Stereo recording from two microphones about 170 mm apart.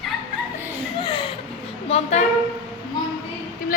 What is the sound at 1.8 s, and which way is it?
Speech, 40° left (ahead or behind).